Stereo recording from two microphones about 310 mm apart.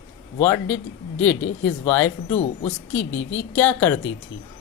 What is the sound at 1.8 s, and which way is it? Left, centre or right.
Speech, centre.